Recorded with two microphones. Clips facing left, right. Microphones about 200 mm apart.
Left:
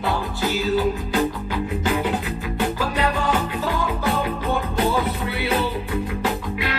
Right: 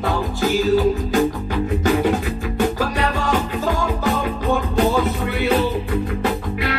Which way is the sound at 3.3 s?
45° right (ahead or behind).